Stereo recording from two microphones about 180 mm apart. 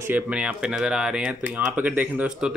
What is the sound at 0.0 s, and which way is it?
Speech, 10° right (ahead or behind).